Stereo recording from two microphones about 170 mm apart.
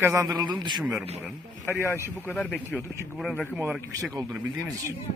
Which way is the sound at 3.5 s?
10° right (ahead or behind).